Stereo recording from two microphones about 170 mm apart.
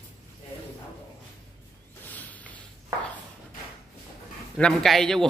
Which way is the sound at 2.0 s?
10° left (ahead or behind).